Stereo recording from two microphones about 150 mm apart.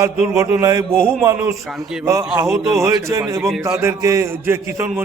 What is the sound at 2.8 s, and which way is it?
A man's voice, 25° right (ahead or behind).